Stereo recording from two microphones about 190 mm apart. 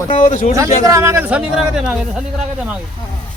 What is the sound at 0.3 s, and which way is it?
Speech, 40° left (ahead or behind).